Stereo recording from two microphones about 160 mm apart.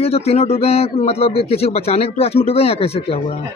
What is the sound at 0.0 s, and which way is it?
A man's voice, 40° left (ahead or behind).